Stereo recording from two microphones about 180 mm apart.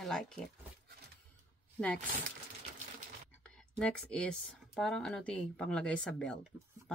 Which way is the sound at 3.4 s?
5° left (ahead or behind).